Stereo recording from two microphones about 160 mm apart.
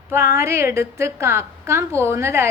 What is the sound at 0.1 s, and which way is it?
A woman's voice, 15° right (ahead or behind).